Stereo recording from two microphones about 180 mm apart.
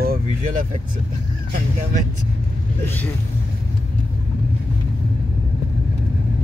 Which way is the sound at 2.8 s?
10° left (ahead or behind).